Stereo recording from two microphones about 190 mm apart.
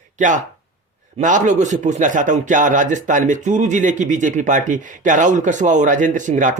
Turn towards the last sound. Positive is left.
turn(degrees=-40)  # may be behind; listen again after turning